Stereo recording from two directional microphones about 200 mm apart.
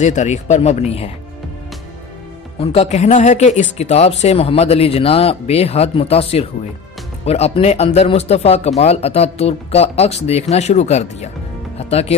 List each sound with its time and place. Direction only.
0.0 s speech: 35° left (ahead or behind)
2.6 s speech: 30° left (ahead or behind)